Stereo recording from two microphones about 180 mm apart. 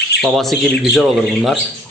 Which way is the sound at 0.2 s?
Centre (ahead or behind).